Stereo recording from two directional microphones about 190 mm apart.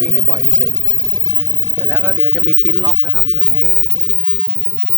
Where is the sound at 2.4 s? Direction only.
5° left (ahead or behind).